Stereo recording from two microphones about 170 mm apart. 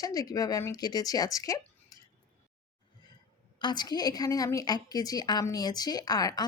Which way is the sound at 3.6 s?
25° left (ahead or behind).